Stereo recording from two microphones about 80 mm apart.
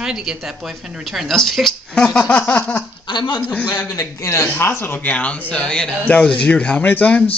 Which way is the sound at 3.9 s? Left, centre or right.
Left.